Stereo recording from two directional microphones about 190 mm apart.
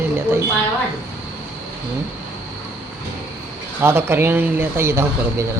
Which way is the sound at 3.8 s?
10° right (ahead or behind).